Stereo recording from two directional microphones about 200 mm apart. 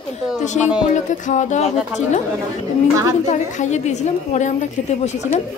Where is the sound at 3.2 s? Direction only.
35° left (ahead or behind).